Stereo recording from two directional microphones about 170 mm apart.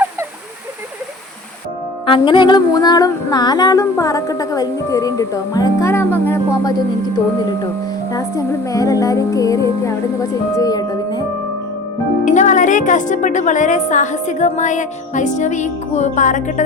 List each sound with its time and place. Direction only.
2.0 s female singing: 30° left (ahead or behind)
8.1 s female singing: 20° left (ahead or behind)
12.2 s a woman's voice: 45° left (ahead or behind)